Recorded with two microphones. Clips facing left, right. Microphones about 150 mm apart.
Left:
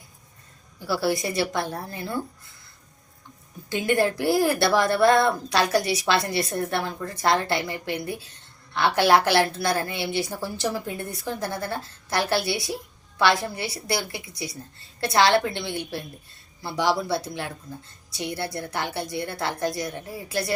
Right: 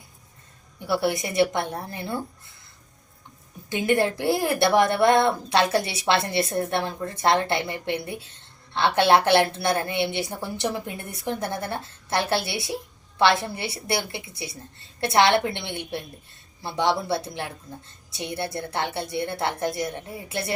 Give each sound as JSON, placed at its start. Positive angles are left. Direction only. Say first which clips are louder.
{"t": 0.9, "sound": "a woman's voice", "louder": "even", "side_deg": -20}
{"t": 3.7, "sound": "a woman's voice", "louder": "even", "side_deg": -20}